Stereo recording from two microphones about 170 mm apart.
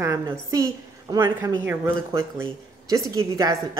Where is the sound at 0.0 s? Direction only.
15° right (ahead or behind).